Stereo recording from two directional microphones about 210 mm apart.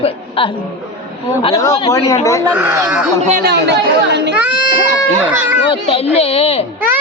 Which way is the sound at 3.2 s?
40° right (ahead or behind).